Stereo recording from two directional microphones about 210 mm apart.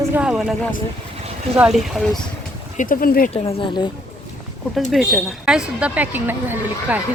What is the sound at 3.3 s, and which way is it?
Speech, 30° left (ahead or behind).